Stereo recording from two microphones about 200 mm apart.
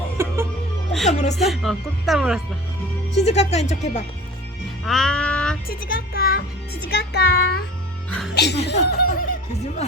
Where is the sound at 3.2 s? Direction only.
35° left (ahead or behind).